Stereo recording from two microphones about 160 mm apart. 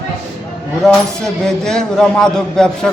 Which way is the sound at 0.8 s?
Centre (ahead or behind).